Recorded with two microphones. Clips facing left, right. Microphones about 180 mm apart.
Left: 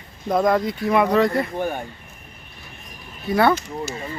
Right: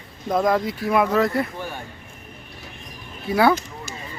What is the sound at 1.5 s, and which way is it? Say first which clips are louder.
Speech: left 7 dB; 50° left (ahead or behind).